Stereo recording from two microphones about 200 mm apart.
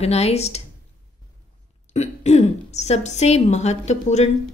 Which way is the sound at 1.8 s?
35° left (ahead or behind).